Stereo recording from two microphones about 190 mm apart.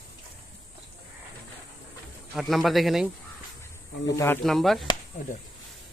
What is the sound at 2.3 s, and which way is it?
Speech, centre (ahead or behind).